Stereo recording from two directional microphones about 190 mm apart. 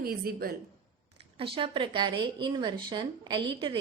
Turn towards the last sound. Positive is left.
turn(degrees=-25)  # may be behind; listen again after turning